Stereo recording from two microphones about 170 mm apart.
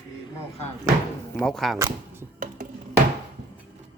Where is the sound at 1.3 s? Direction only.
Centre (ahead or behind).